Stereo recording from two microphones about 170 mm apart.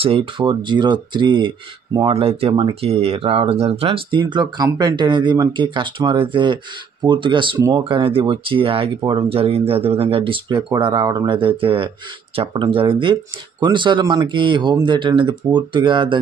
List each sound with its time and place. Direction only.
0.0 s speech: 35° right (ahead or behind)